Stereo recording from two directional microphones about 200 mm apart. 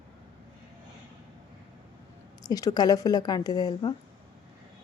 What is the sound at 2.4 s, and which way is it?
A woman's voice, 20° left (ahead or behind).